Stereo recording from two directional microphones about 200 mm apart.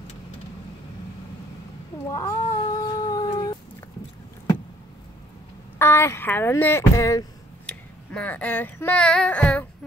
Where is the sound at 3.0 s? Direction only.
20° left (ahead or behind).